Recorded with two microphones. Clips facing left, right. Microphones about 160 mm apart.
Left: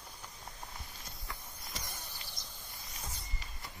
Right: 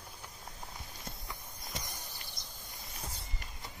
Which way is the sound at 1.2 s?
20° right (ahead or behind).